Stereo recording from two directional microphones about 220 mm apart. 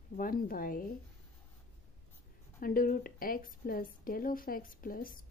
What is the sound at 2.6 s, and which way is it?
Speech, 40° left (ahead or behind).